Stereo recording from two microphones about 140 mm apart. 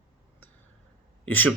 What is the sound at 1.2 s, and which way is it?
Speech, 10° left (ahead or behind).